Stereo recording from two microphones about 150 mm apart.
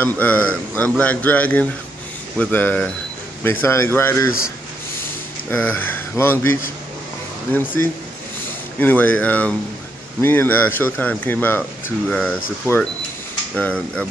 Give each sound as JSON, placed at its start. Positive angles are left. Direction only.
{"t": 0.0, "sound": "a man's voice", "side_deg": 10}
{"t": 5.5, "sound": "a man's voice", "side_deg": 10}